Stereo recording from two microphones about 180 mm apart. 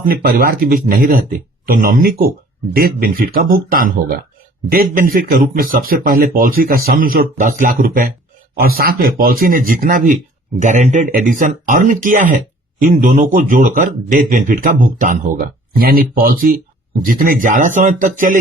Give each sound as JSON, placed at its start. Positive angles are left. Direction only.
{"t": 0.0, "sound": "speech", "side_deg": -55}